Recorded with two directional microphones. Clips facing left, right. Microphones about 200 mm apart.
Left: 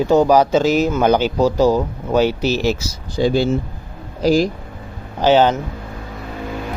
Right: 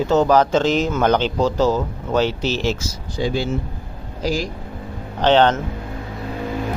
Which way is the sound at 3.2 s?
35° left (ahead or behind).